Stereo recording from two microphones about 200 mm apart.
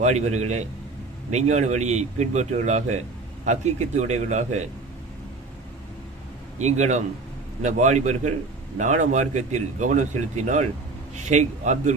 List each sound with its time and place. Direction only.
0.0 s speech: 35° right (ahead or behind)
6.6 s speech: 35° right (ahead or behind)